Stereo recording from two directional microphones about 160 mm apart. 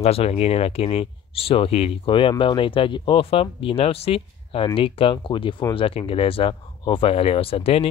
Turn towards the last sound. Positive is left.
turn(degrees=35)  # may be behind; listen again after turning